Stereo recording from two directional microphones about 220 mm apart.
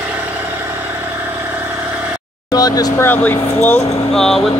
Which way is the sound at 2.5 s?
15° left (ahead or behind).